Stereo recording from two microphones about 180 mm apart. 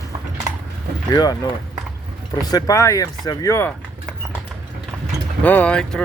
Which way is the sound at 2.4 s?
20° left (ahead or behind).